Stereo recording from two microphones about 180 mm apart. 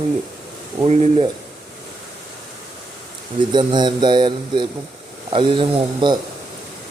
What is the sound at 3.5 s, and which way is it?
Speech, 25° right (ahead or behind).